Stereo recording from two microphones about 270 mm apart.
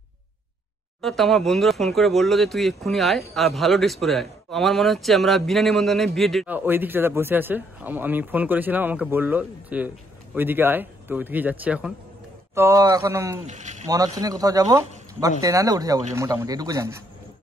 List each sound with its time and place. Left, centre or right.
1.0 s speech: centre
13.5 s speech: right
13.8 s speech: centre